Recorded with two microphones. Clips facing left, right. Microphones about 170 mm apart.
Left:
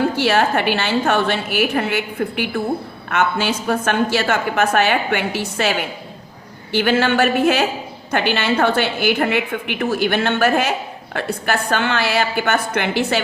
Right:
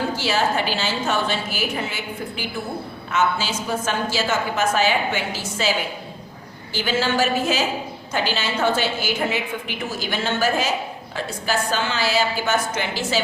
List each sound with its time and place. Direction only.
0.2 s a woman's voice: 60° left (ahead or behind)
6.7 s a woman's voice: 60° left (ahead or behind)